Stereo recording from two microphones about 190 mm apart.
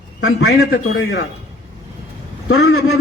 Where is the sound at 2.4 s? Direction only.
90° left.